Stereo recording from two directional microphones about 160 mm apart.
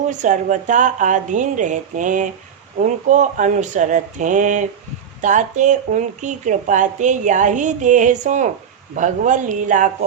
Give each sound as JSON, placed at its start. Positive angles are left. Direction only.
{"t": 0.1, "sound": "speech", "side_deg": -50}